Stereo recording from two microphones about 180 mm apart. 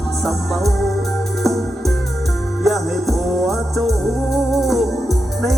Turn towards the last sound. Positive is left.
turn(degrees=0)  # may be behind; listen again after turning